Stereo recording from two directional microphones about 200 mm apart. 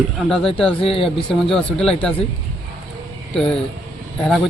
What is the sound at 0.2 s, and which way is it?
A man's voice, 5° left (ahead or behind).